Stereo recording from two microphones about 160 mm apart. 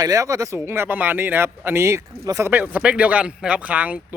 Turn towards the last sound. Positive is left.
turn(degrees=-10)  # may be behind; listen again after turning